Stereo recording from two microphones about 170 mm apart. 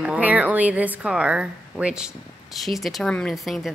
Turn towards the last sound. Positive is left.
turn(degrees=0)  # may be behind; listen again after turning